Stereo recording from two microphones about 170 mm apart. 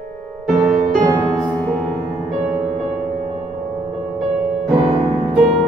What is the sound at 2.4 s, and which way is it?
Music, 5° right (ahead or behind).